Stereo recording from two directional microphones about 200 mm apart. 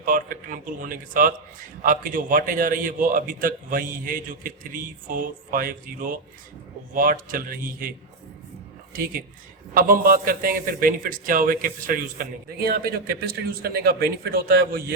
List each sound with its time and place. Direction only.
0.0 s a man's voice: 45° right (ahead or behind)